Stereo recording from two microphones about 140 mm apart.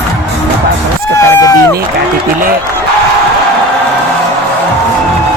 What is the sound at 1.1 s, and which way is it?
Run, 20° left (ahead or behind).